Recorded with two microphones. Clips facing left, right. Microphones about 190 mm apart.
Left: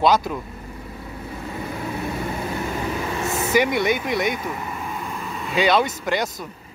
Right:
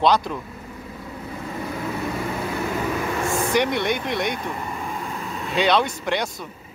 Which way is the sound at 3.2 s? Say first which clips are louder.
Right 1 dB; 20° left (ahead or behind).